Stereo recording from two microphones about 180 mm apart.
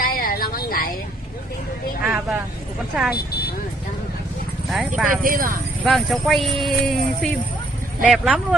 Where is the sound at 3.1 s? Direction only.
60° left (ahead or behind).